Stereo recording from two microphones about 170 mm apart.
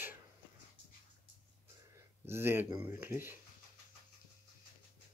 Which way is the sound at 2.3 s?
15° right (ahead or behind).